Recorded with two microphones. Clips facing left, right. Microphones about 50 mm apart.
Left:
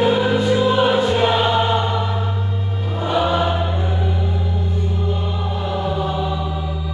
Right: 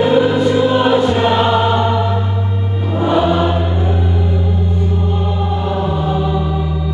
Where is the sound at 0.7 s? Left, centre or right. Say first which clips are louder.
Right 3 dB; centre.